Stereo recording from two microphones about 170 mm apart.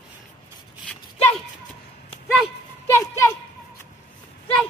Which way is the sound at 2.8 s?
15° left (ahead or behind).